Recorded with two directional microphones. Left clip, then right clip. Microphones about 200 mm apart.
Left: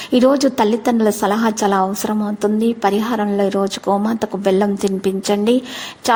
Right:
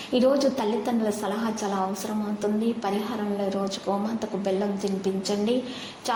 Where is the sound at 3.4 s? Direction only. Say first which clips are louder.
Left 10 dB; 50° left (ahead or behind).